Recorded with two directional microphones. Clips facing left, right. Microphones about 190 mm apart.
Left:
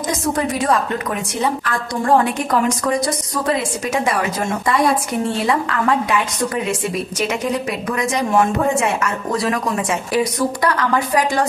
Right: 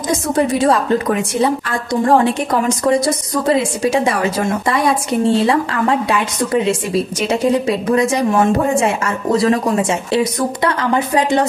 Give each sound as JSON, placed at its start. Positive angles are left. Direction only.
{"t": 0.7, "sound": "a woman's voice", "side_deg": -30}
{"t": 3.4, "sound": "a woman's voice", "side_deg": -30}
{"t": 5.2, "sound": "a woman's voice", "side_deg": -30}